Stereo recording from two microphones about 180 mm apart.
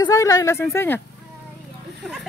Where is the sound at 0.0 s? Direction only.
20° left (ahead or behind).